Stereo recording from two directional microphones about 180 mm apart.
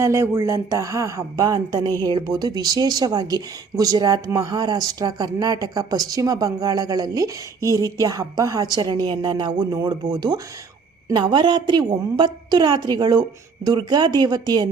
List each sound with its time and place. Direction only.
0.0 s speech: 15° right (ahead or behind)